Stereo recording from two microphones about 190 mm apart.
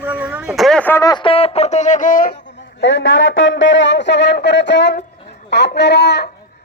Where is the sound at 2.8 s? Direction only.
70° left (ahead or behind).